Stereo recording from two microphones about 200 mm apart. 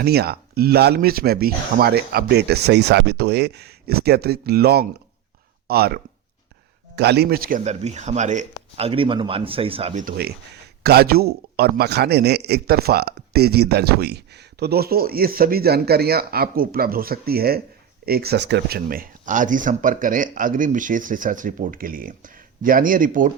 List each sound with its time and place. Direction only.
0.0 s speech: 50° right (ahead or behind)
7.6 s speech: 35° right (ahead or behind)